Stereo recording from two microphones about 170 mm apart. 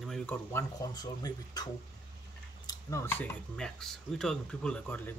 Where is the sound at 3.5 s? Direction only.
5° left (ahead or behind).